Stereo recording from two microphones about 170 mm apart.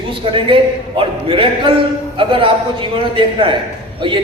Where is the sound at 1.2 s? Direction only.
30° right (ahead or behind).